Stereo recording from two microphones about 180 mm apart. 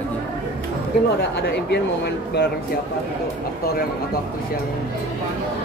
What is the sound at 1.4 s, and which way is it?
Speech, 70° left (ahead or behind).